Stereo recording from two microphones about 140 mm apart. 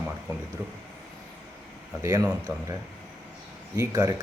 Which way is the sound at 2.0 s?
25° right (ahead or behind).